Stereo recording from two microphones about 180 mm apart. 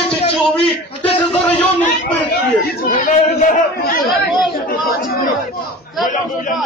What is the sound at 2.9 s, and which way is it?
Speech, 45° left (ahead or behind).